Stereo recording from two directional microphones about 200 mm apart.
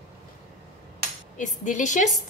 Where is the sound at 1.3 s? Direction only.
40° left (ahead or behind).